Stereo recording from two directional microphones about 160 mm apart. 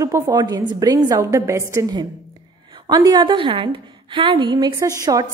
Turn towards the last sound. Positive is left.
turn(degrees=-25)  # may be behind; listen again after turning